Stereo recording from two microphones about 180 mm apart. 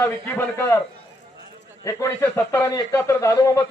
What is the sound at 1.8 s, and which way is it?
Speech, 15° left (ahead or behind).